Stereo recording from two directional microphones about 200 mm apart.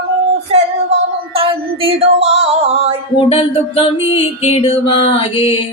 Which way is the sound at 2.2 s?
30° right (ahead or behind).